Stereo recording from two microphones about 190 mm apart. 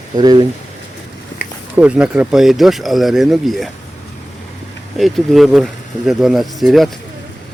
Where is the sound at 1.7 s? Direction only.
5° right (ahead or behind).